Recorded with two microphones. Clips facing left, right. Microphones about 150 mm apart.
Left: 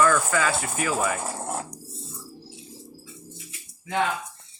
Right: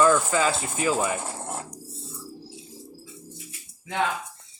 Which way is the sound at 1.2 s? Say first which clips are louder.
Left 3 dB; centre (ahead or behind).